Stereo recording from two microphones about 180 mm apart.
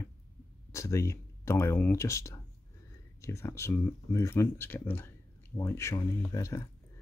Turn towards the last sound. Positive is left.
turn(degrees=15)  # may be behind; listen again after turning